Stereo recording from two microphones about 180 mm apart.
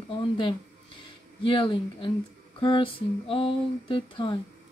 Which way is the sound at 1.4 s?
30° left (ahead or behind).